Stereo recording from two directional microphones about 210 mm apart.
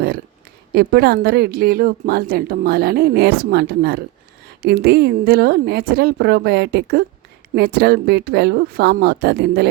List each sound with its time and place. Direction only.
0.7 s a woman's voice: 50° right (ahead or behind)